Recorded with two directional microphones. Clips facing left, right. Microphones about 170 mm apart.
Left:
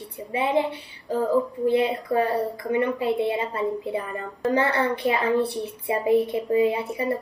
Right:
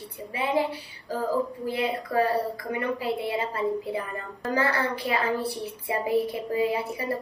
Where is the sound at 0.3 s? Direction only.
25° left (ahead or behind).